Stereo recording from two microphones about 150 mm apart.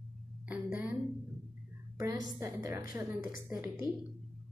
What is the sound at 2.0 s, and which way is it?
A woman's voice, 25° right (ahead or behind).